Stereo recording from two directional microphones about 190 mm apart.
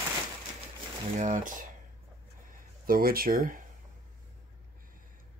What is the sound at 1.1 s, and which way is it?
Speech, 45° right (ahead or behind).